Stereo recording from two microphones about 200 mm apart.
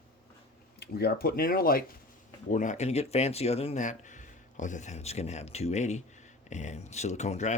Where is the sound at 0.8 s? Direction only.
50° left (ahead or behind).